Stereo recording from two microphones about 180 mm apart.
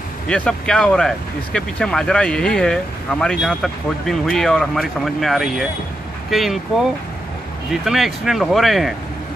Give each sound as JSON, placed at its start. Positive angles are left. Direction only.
{"t": 0.3, "sound": "speech", "side_deg": 5}